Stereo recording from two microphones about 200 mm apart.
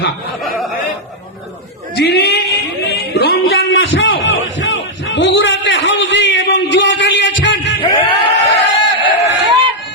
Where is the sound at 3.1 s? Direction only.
55° left (ahead or behind).